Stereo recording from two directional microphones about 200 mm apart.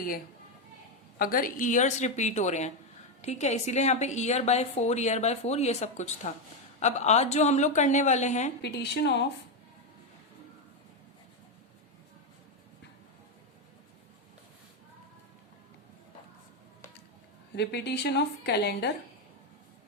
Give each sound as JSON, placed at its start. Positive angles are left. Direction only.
{"t": 1.2, "sound": "a woman's voice", "side_deg": 45}
{"t": 8.6, "sound": "a woman's voice", "side_deg": 60}
{"t": 17.6, "sound": "a woman's voice", "side_deg": 55}